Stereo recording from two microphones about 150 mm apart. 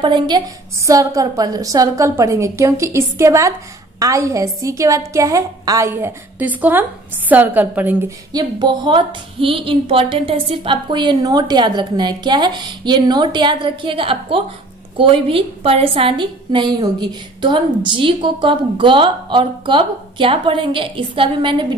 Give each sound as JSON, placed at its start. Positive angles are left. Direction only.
{"t": 0.0, "sound": "a woman's voice", "side_deg": -30}
{"t": 8.3, "sound": "a woman's voice", "side_deg": -30}